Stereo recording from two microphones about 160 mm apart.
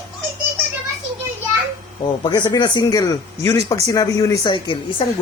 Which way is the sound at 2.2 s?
30° left (ahead or behind).